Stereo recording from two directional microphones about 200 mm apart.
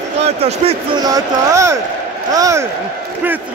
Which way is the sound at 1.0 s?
15° right (ahead or behind).